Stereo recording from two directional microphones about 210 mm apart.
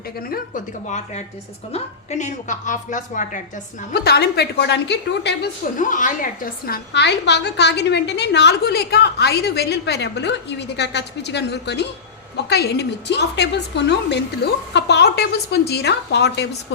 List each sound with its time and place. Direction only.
0.2 s a woman's voice: 40° left (ahead or behind)
3.9 s a woman's voice: 50° left (ahead or behind)